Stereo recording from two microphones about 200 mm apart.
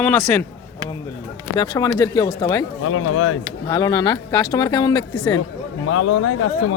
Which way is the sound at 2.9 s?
90° left.